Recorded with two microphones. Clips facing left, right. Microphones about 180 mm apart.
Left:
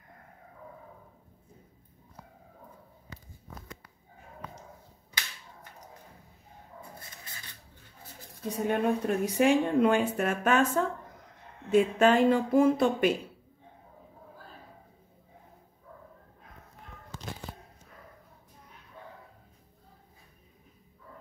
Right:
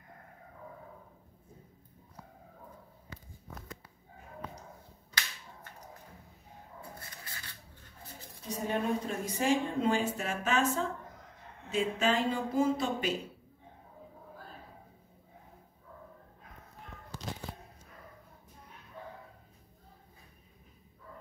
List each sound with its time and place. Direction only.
8.6 s a woman's voice: 60° left (ahead or behind)